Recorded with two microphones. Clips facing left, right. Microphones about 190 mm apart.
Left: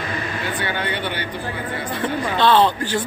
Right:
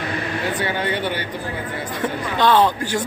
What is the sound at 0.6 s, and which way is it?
Speech, 40° right (ahead or behind).